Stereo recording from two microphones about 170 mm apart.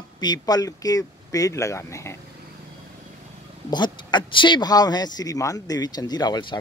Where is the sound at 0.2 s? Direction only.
25° left (ahead or behind).